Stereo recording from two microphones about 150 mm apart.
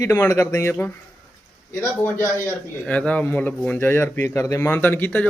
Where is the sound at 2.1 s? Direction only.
15° left (ahead or behind).